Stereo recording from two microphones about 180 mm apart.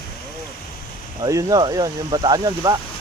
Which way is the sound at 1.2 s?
20° right (ahead or behind).